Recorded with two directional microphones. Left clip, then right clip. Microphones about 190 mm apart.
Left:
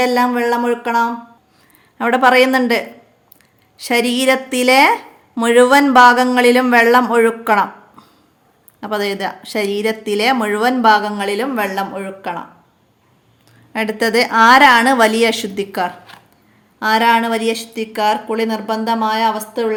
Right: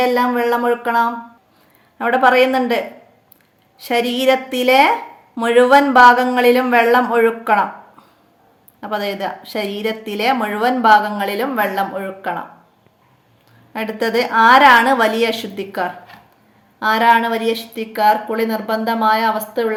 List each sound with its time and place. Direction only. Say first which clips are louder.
0.0 s a woman's voice: left 1 dB; 25° left (ahead or behind)
2.0 s a woman's voice: left 1 dB; 30° left (ahead or behind)
13.7 s a woman's voice: left 3 dB; 30° left (ahead or behind)